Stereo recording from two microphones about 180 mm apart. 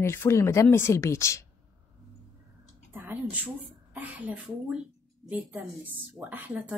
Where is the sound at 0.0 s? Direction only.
15° left (ahead or behind).